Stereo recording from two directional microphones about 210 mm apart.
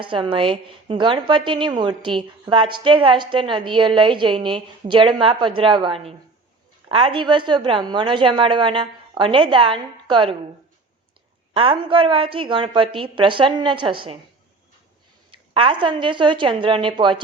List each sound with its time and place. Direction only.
0.0 s a woman's voice: 25° right (ahead or behind)
11.5 s a woman's voice: 25° right (ahead or behind)
15.3 s a woman's voice: 25° right (ahead or behind)